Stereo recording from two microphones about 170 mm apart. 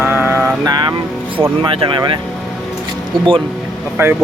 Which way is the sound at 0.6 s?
25° right (ahead or behind).